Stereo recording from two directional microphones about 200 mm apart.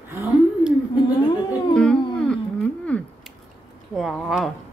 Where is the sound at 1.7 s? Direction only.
5° left (ahead or behind).